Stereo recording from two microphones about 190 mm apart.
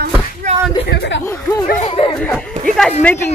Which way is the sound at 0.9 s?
65° left (ahead or behind).